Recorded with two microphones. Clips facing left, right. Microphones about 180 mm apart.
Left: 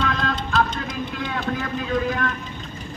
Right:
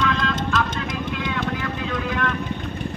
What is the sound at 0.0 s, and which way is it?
Music, 40° left (ahead or behind).